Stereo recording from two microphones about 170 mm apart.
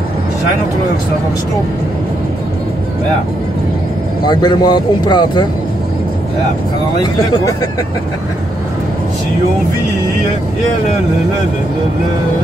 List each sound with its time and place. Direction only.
4.3 s speech: 25° left (ahead or behind)